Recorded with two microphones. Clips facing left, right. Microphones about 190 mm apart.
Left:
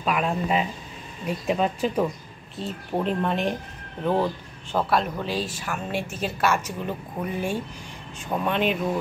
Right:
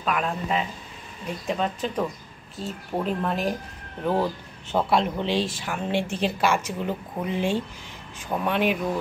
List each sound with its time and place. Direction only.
0.0 s speech: 10° left (ahead or behind)
4.7 s speech: 20° right (ahead or behind)
6.4 s a woman's voice: 15° right (ahead or behind)
8.3 s a woman's voice: 10° right (ahead or behind)